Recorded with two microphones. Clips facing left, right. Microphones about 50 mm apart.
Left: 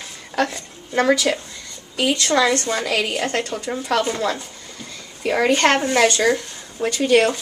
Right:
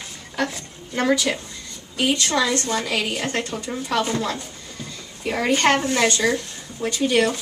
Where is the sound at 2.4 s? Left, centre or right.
Left.